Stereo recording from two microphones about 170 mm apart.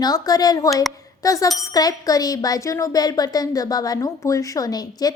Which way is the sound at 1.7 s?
20° left (ahead or behind).